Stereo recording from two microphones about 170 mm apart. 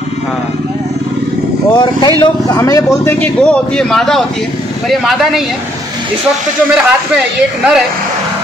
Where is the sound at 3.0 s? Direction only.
10° left (ahead or behind).